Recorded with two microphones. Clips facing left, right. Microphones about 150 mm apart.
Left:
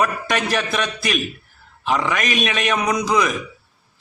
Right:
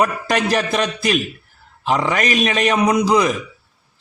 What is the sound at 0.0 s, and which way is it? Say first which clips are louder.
A man's voice: right 3 dB; 30° right (ahead or behind).